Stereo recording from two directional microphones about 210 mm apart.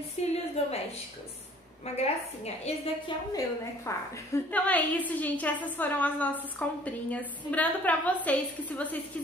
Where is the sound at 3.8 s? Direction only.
15° left (ahead or behind).